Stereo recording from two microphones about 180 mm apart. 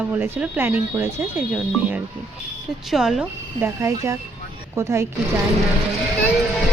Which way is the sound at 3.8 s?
15° right (ahead or behind).